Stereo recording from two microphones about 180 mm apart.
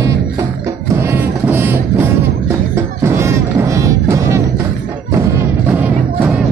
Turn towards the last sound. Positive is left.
turn(degrees=-15)  # may be behind; listen again after turning